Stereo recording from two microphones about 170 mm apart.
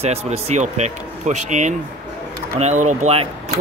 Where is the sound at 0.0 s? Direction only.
40° right (ahead or behind).